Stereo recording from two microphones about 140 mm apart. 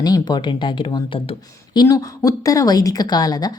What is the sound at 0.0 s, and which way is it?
A woman's voice, 30° left (ahead or behind).